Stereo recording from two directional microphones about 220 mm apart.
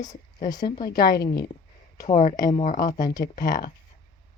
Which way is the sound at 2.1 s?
30° left (ahead or behind).